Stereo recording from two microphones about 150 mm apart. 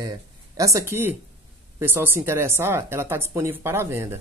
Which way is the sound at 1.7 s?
15° right (ahead or behind).